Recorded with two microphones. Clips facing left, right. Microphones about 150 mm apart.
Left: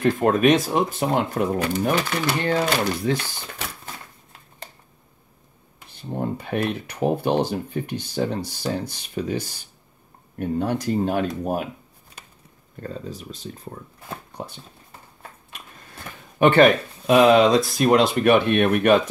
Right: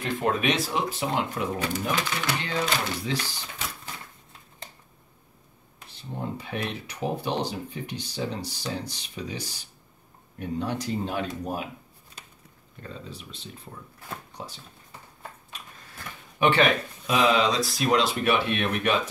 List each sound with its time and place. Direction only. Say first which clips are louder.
0.0 s speech: left 8 dB; 50° left (ahead or behind)
5.9 s speech: left 7 dB; 55° left (ahead or behind)
12.8 s speech: left 7 dB; 45° left (ahead or behind)
14.3 s a sound: left 5 dB; 55° left (ahead or behind)
16.3 s speech: left 7 dB; 50° left (ahead or behind)